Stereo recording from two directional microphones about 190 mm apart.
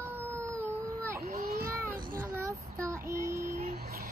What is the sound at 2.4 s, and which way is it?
Child singing, 15° right (ahead or behind).